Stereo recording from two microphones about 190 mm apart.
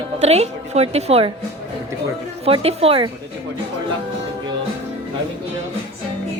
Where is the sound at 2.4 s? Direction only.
30° right (ahead or behind).